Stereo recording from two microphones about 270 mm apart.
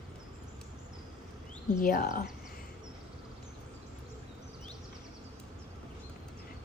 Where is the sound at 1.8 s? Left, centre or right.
Left.